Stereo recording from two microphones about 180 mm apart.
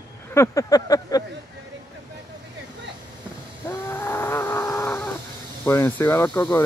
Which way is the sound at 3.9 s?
15° left (ahead or behind).